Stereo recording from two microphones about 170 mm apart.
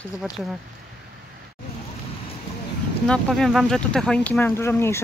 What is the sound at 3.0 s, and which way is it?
Speech, 5° left (ahead or behind).